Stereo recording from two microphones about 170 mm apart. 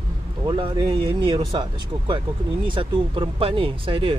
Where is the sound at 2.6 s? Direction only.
30° right (ahead or behind).